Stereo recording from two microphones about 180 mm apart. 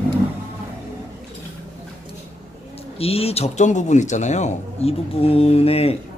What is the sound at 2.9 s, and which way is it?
Speech, 35° left (ahead or behind).